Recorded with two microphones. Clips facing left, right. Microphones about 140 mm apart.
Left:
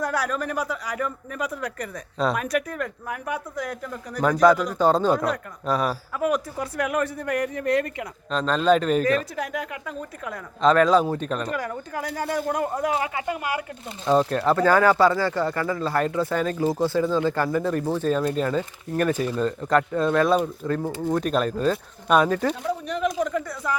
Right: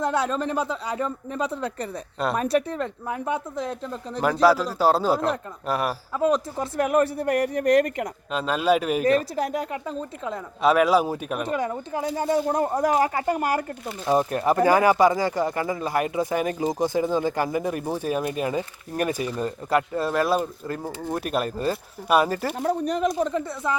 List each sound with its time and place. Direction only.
0.0 s speech: 25° right (ahead or behind)
4.8 s speech: 5° right (ahead or behind)
6.1 s speech: 25° right (ahead or behind); by 8.0 s 40° right (ahead or behind)
8.3 s speech: 10° right (ahead or behind)
9.0 s speech: 35° right (ahead or behind)
10.6 s speech: 10° right (ahead or behind)
11.4 s speech: 25° right (ahead or behind); by 13.7 s 40° right (ahead or behind)
14.3 s speech: 15° right (ahead or behind)
22.5 s speech: 40° right (ahead or behind)